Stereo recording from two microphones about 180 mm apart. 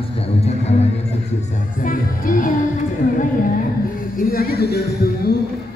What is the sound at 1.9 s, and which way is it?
Music, 50° left (ahead or behind).